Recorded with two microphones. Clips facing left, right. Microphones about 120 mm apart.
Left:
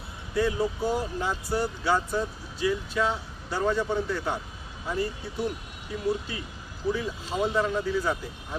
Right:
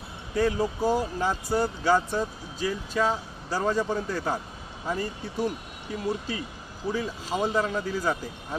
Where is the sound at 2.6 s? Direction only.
35° right (ahead or behind).